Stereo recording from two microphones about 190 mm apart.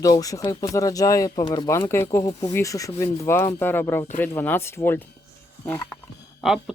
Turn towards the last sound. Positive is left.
turn(degrees=0)  # may be behind; listen again after turning